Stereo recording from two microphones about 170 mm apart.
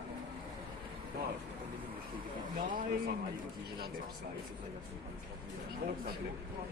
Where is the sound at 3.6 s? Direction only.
70° right (ahead or behind).